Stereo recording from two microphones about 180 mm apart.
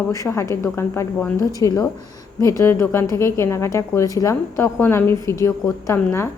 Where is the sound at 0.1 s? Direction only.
15° left (ahead or behind).